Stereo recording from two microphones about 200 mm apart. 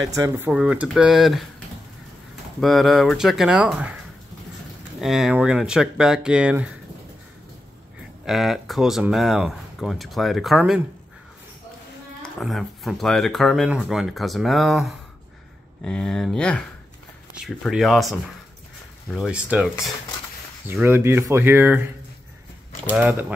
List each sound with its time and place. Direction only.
0.1 s speech: 15° right (ahead or behind)
2.6 s speech: centre (ahead or behind)
5.0 s speech: centre (ahead or behind)
8.3 s speech: centre (ahead or behind)
12.2 s speech: centre (ahead or behind)
19.1 s speech: 5° right (ahead or behind)
22.9 s speech: 5° right (ahead or behind)